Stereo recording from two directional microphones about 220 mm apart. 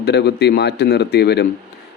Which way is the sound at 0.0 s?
50° left (ahead or behind).